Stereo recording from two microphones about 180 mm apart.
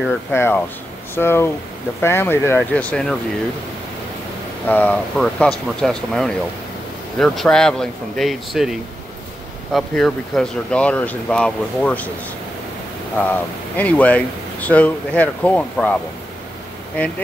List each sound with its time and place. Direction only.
0.3 s speech: 10° left (ahead or behind)
4.6 s speech: 10° left (ahead or behind)
13.2 s speech: 10° left (ahead or behind)